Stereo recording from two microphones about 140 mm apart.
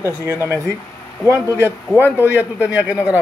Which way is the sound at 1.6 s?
15° left (ahead or behind).